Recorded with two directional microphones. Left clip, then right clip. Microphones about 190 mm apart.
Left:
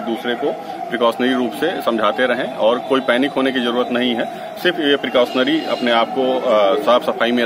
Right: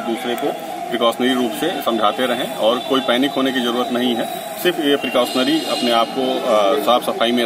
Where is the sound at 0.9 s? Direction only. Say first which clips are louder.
Left 1 dB; 20° left (ahead or behind).